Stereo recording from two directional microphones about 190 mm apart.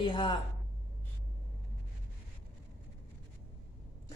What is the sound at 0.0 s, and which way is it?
Speech, 25° left (ahead or behind).